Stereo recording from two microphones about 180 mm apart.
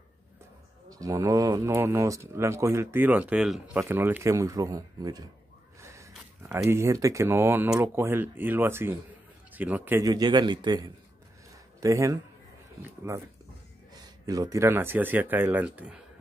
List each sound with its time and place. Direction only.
0.8 s a man's voice: 20° right (ahead or behind)
13.9 s speech: 20° right (ahead or behind)